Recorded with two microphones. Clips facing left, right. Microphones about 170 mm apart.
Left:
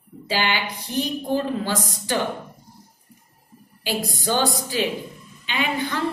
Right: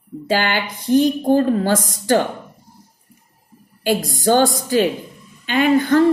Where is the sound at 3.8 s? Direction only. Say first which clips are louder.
Right 8 dB; 50° right (ahead or behind).